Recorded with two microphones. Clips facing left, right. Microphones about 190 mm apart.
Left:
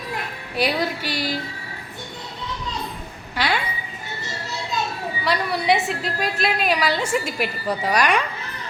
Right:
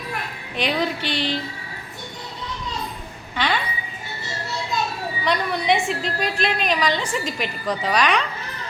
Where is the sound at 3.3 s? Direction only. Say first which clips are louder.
Even; 10° left (ahead or behind).